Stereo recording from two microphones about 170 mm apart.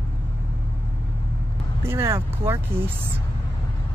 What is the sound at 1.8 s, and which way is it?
Speech, 15° right (ahead or behind).